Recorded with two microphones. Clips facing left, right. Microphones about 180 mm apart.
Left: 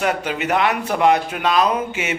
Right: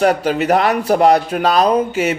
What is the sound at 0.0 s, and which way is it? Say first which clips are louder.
Speech: right 7 dB; 40° right (ahead or behind).